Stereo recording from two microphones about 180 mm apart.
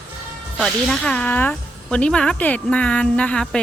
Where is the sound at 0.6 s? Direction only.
5° left (ahead or behind).